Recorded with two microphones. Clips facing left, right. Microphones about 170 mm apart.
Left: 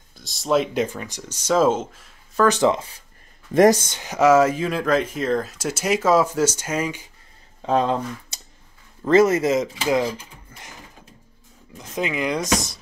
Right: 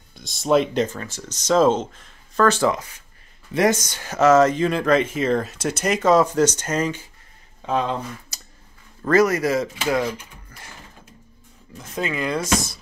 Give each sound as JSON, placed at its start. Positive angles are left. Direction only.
{"t": 0.1, "sound": "speech", "side_deg": 0}
{"t": 0.8, "sound": "speech", "side_deg": 15}
{"t": 3.5, "sound": "speech", "side_deg": 40}
{"t": 3.8, "sound": "speech", "side_deg": 20}
{"t": 7.6, "sound": "speech", "side_deg": 35}
{"t": 8.3, "sound": "a sound", "side_deg": 25}
{"t": 9.0, "sound": "speech", "side_deg": 25}
{"t": 10.5, "sound": "a sound", "side_deg": 15}
{"t": 11.7, "sound": "speech", "side_deg": 15}